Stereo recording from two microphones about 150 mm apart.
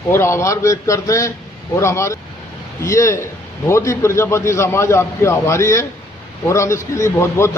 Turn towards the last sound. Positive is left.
turn(degrees=15)  # may be behind; listen again after turning